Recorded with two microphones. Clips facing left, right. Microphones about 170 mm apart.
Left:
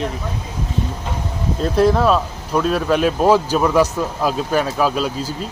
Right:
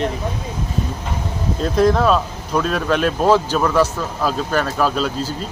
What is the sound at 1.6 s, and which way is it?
Speech, 5° left (ahead or behind).